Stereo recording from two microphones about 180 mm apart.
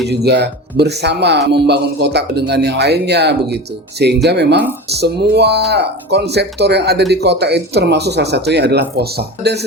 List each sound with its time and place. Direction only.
0.1 s speech: 65° right (ahead or behind)